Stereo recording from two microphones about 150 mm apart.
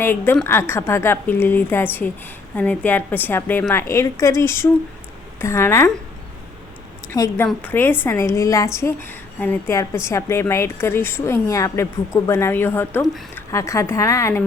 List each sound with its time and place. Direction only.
0.0 s a woman's voice: 15° left (ahead or behind)
7.1 s a woman's voice: 15° left (ahead or behind)